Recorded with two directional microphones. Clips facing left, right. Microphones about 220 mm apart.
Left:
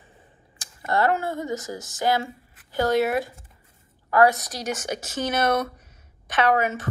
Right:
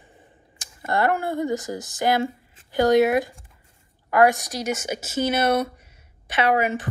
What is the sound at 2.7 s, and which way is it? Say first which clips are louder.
Speech: right 4 dB; 15° right (ahead or behind).